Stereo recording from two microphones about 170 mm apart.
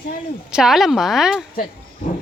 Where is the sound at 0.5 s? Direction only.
Centre (ahead or behind).